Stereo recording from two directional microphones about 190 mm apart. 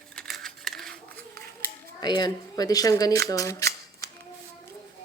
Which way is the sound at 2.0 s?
20° left (ahead or behind).